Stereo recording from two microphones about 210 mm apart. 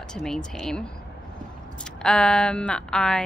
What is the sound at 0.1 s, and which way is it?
Speech, 5° left (ahead or behind).